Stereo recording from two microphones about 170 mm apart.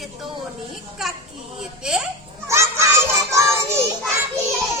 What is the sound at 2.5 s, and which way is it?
Music, 15° right (ahead or behind).